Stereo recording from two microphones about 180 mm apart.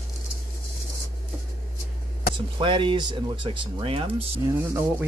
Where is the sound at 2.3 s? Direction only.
25° right (ahead or behind).